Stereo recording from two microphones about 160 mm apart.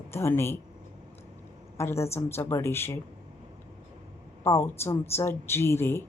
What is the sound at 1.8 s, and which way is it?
Speech, 15° left (ahead or behind).